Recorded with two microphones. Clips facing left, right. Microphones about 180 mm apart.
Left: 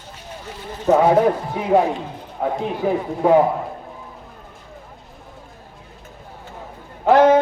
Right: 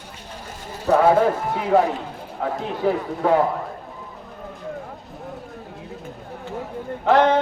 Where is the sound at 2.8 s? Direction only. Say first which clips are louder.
Even; 15° left (ahead or behind).